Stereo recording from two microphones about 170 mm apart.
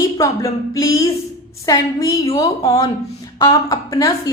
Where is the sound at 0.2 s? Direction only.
20° left (ahead or behind).